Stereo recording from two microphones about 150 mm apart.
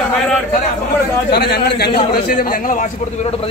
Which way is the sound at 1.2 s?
90° left.